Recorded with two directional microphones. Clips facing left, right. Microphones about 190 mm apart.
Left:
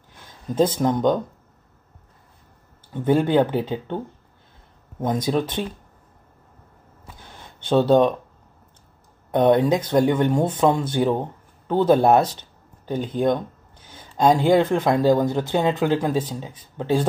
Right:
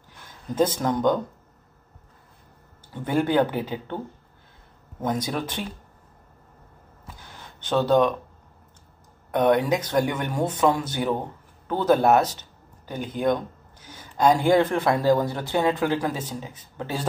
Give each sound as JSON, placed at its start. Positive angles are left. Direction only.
{"t": 0.6, "sound": "speech", "side_deg": 20}
{"t": 2.9, "sound": "speech", "side_deg": 20}
{"t": 5.0, "sound": "speech", "side_deg": 25}
{"t": 7.7, "sound": "speech", "side_deg": 25}
{"t": 9.3, "sound": "speech", "side_deg": 25}